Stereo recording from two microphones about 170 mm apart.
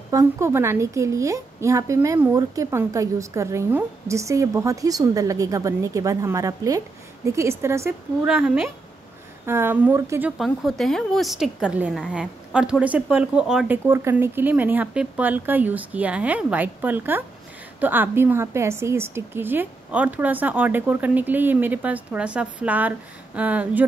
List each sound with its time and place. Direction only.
0.1 s a woman's voice: 20° right (ahead or behind)
10.3 s a woman's voice: centre (ahead or behind)